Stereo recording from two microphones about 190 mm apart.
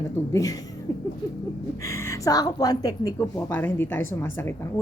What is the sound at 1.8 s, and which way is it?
A woman's voice, 15° left (ahead or behind).